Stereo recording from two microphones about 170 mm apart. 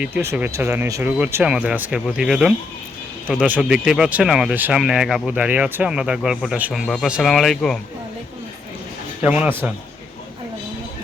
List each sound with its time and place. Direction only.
0.0 s speech: 15° right (ahead or behind)
9.2 s speech: 10° right (ahead or behind)